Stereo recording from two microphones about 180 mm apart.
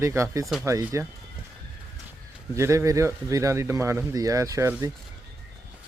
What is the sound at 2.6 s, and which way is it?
Speech, 15° right (ahead or behind).